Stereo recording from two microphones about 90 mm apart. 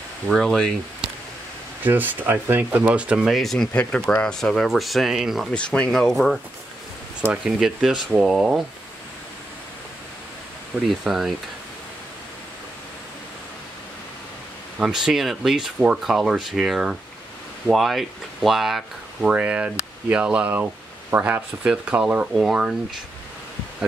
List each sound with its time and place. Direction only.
0.3 s speech: centre (ahead or behind)
1.8 s speech: 20° right (ahead or behind); by 5.5 s 5° right (ahead or behind)
5.5 s speech: 10° left (ahead or behind)
7.4 s speech: 5° right (ahead or behind)
10.7 s speech: 10° right (ahead or behind)
14.8 s speech: 5° right (ahead or behind)
19.2 s speech: 15° right (ahead or behind)
21.6 s speech: 10° right (ahead or behind)